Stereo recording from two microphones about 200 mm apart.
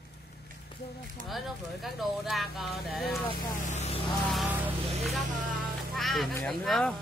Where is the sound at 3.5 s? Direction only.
35° left (ahead or behind).